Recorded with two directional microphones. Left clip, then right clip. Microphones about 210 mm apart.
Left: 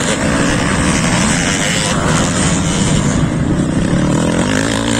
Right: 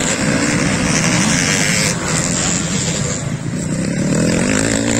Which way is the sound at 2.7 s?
40° right (ahead or behind).